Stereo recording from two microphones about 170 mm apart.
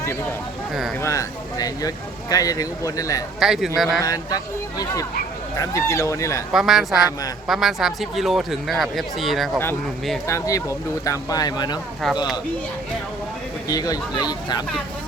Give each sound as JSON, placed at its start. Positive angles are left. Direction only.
{"t": 0.7, "sound": "speech", "side_deg": 0}
{"t": 1.0, "sound": "speech", "side_deg": 20}
{"t": 3.4, "sound": "speech", "side_deg": 0}
{"t": 4.0, "sound": "speech", "side_deg": 20}
{"t": 5.5, "sound": "speech", "side_deg": 15}
{"t": 6.5, "sound": "speech", "side_deg": 0}
{"t": 10.2, "sound": "speech", "side_deg": 20}
{"t": 12.0, "sound": "speech", "side_deg": 0}
{"t": 13.7, "sound": "speech", "side_deg": 20}